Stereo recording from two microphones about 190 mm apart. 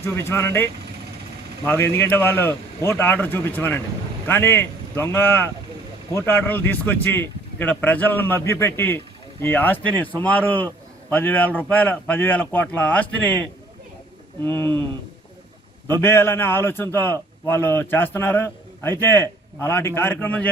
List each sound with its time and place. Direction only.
0.0 s a man's voice: 15° left (ahead or behind)
14.4 s a man's voice: 10° left (ahead or behind)
15.9 s a man's voice: 10° left (ahead or behind)